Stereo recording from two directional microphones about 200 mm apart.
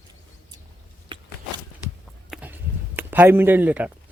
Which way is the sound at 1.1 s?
25° right (ahead or behind).